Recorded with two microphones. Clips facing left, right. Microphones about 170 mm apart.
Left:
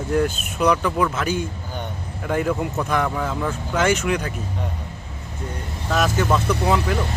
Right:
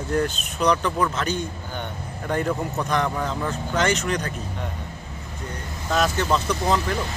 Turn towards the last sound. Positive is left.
turn(degrees=5)  # may be behind; listen again after turning